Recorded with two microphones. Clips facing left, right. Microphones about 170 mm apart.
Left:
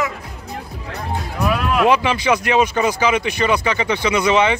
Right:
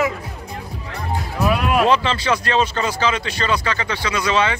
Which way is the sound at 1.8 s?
15° left (ahead or behind).